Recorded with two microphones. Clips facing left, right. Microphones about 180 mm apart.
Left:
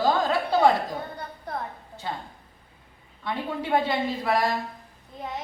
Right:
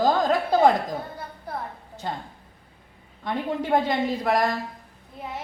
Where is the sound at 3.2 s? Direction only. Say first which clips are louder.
Right 3 dB; 45° right (ahead or behind).